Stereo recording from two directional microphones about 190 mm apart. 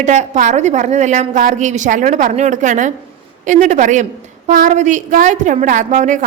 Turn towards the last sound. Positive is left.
turn(degrees=-40)  # may be behind; listen again after turning